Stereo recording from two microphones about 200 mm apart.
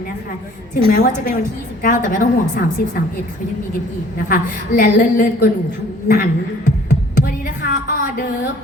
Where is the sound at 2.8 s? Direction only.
45° left (ahead or behind).